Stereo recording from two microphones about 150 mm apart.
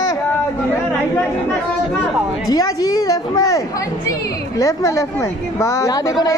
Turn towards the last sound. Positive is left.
turn(degrees=25)  # may be behind; listen again after turning